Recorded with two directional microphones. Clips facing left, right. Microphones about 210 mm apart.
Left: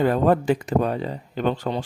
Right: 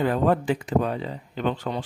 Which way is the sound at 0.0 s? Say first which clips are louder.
Left 3 dB; 45° left (ahead or behind).